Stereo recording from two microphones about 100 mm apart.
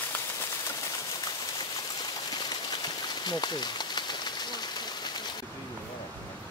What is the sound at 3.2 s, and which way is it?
Pigeon, 45° left (ahead or behind).